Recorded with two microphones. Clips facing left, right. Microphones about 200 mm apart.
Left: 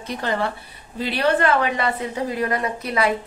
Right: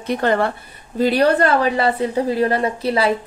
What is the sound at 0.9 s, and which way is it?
A woman's voice, 45° right (ahead or behind).